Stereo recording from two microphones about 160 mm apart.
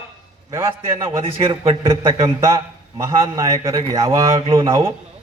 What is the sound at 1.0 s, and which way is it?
A man's voice, 30° right (ahead or behind).